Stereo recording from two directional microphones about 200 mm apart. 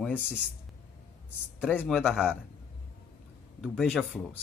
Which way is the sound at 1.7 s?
10° left (ahead or behind).